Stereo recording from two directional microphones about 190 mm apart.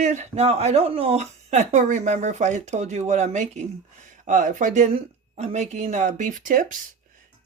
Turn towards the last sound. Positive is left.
turn(degrees=-45)  # may be behind; listen again after turning